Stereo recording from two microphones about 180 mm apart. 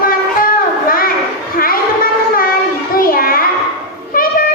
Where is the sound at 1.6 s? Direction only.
55° left (ahead or behind).